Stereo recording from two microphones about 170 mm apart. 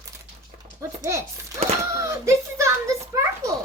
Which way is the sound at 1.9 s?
15° right (ahead or behind).